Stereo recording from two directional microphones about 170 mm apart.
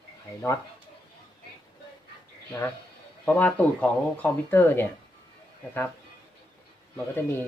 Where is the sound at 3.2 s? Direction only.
10° left (ahead or behind).